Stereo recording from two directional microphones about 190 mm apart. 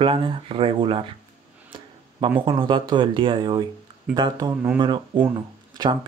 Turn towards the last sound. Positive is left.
turn(degrees=-25)  # may be behind; listen again after turning